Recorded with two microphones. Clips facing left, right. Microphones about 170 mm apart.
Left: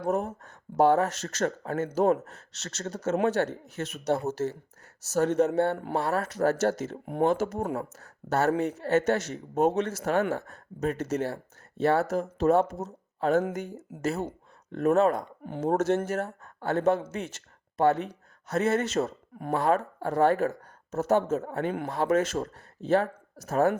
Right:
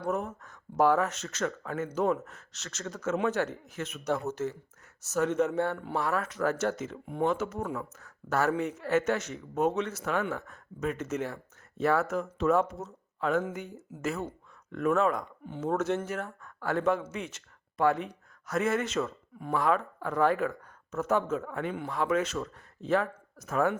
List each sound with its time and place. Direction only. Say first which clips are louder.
0.0 s speech: left 4 dB; 40° left (ahead or behind)
1.3 s speech: left 4 dB; 40° left (ahead or behind)
2.3 s speech: left 4 dB; 30° left (ahead or behind)
4.4 s speech: left 3 dB; 45° left (ahead or behind)
8.3 s speech: left 3 dB; 35° left (ahead or behind)
16.2 s speech: left 3 dB; 25° left (ahead or behind)
16.7 s speech: left 3 dB; 35° left (ahead or behind)
19.5 s speech: left 2 dB; 30° left (ahead or behind)
21.7 s speech: left 4 dB; 55° left (ahead or behind)
21.9 s speech: left 3 dB; 45° left (ahead or behind)